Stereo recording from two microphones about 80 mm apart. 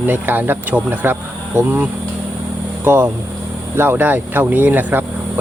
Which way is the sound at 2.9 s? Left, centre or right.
Right.